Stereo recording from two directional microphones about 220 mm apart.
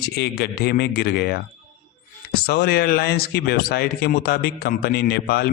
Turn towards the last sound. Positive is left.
turn(degrees=45)  # may be behind; listen again after turning